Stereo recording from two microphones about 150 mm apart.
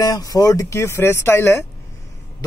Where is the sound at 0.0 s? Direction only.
25° left (ahead or behind).